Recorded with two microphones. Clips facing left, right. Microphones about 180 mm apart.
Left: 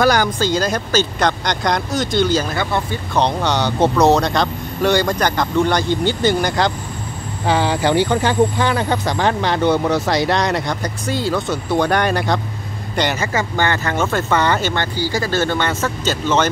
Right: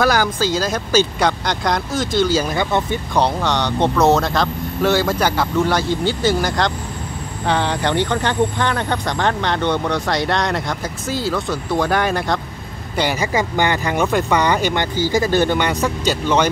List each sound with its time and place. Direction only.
0.0 s speech: centre (ahead or behind)
2.5 s speech: 20° right (ahead or behind)
3.2 s speech: 5° right (ahead or behind)